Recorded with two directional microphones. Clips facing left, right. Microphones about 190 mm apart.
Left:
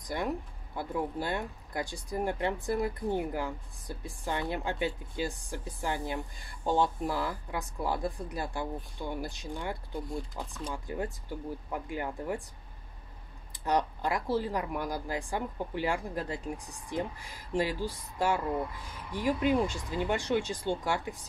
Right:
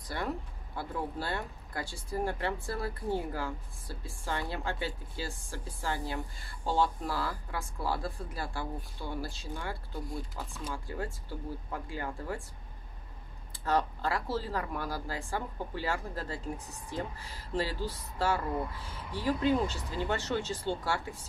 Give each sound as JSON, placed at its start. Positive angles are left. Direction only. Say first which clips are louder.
{"t": 0.0, "sound": "speech", "louder": "left 3 dB", "side_deg": 15}
{"t": 13.7, "sound": "speech", "louder": "left 1 dB", "side_deg": 15}